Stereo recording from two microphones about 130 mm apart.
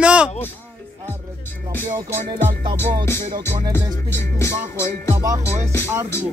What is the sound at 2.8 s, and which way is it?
Music, 20° left (ahead or behind).